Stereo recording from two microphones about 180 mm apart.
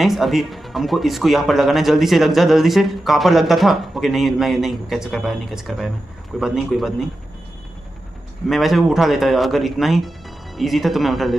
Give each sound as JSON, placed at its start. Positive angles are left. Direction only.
{"t": 0.0, "sound": "speech", "side_deg": 0}
{"t": 8.5, "sound": "speech", "side_deg": 0}